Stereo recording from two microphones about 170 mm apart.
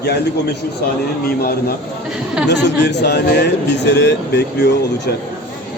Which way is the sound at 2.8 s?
85° left.